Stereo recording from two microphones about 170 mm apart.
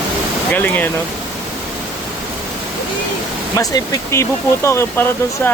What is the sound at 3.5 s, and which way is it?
Speech, 20° left (ahead or behind).